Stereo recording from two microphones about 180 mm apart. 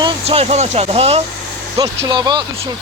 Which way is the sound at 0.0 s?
35° right (ahead or behind).